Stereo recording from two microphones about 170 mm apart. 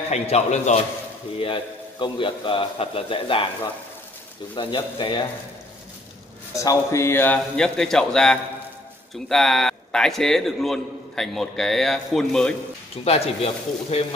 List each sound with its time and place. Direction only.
0.1 s a man's voice: 40° left (ahead or behind)
4.6 s speech: 30° left (ahead or behind)
6.5 s a man's voice: 20° left (ahead or behind); by 12.5 s 5° left (ahead or behind)
12.9 s a man's voice: 35° left (ahead or behind)